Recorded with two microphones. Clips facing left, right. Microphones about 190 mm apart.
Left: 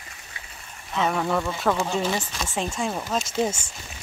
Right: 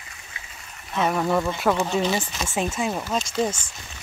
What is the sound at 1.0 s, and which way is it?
Speech, 5° right (ahead or behind).